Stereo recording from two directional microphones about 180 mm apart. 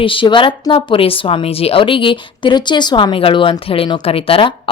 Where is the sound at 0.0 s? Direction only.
30° left (ahead or behind).